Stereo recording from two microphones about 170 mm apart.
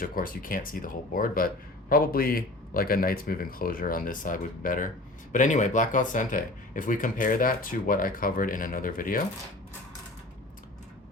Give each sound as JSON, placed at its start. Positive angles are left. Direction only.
{"t": 0.0, "sound": "speech", "side_deg": 55}